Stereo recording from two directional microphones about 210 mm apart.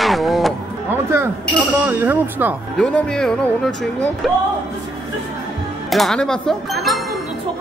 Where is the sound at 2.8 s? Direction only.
5° left (ahead or behind).